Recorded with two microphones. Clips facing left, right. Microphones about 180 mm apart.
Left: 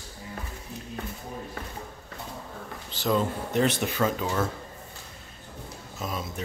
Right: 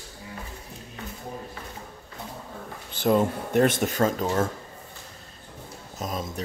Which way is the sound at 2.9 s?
55° right (ahead or behind).